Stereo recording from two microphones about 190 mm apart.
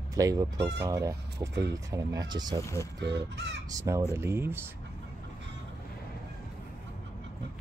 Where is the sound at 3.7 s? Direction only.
15° right (ahead or behind).